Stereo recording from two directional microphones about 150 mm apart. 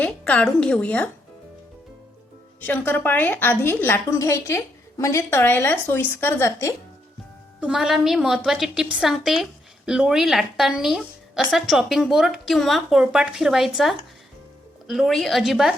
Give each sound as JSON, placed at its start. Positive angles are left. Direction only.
{"t": 0.0, "sound": "a woman's voice", "side_deg": 5}
{"t": 2.6, "sound": "a woman's voice", "side_deg": 10}
{"t": 7.6, "sound": "a woman's voice", "side_deg": -5}